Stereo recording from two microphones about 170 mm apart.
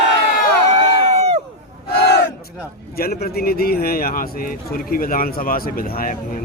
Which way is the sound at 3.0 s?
65° left (ahead or behind).